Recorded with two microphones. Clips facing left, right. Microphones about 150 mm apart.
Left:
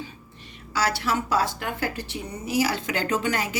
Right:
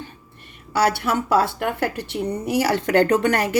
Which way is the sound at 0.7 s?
55° right (ahead or behind).